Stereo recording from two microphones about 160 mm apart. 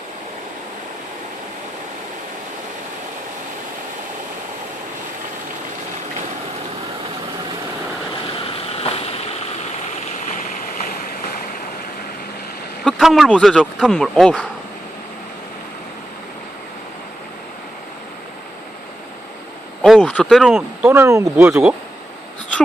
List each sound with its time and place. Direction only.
8.7 s a sound: 40° left (ahead or behind)
10.2 s stream: 50° left (ahead or behind)
12.8 s speech: centre (ahead or behind)
19.8 s speech: 5° left (ahead or behind)
20.5 s speech: 10° right (ahead or behind)